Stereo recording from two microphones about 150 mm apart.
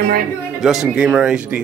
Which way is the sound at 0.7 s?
5° right (ahead or behind).